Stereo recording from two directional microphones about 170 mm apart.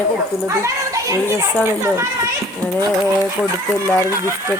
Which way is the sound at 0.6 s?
15° right (ahead or behind).